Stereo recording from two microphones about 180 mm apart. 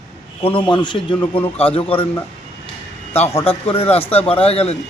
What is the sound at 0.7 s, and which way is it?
A man's voice, 25° left (ahead or behind).